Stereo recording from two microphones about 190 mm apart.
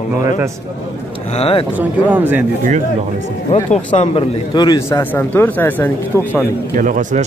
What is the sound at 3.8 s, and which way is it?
Speech, 25° left (ahead or behind).